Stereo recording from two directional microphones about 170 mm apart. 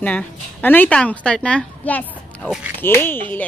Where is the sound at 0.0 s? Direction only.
10° left (ahead or behind).